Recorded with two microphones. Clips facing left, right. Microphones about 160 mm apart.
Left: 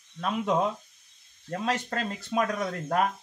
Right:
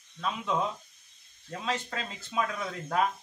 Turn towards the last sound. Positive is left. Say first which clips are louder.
# left 3 dB
turn(degrees=45)  # may be behind; listen again after turning